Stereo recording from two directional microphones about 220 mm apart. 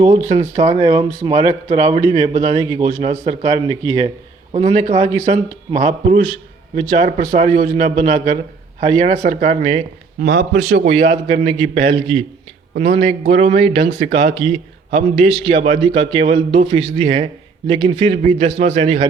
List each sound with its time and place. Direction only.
0.0 s a man's voice: 35° right (ahead or behind)
4.5 s a man's voice: 30° right (ahead or behind)
10.2 s a man's voice: 50° right (ahead or behind)
10.6 s a man's voice: 30° right (ahead or behind)